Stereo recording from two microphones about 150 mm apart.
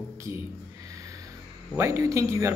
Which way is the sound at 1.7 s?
20° right (ahead or behind).